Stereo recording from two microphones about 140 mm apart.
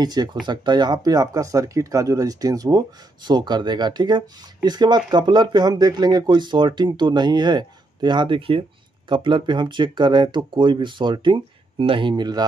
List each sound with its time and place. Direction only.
0.0 s speech: 30° right (ahead or behind)